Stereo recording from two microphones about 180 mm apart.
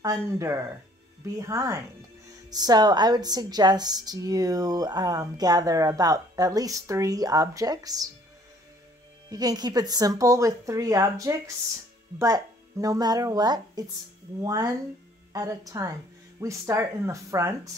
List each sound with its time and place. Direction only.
0.0 s a woman's voice: 20° right (ahead or behind)
9.3 s a woman's voice: 20° right (ahead or behind)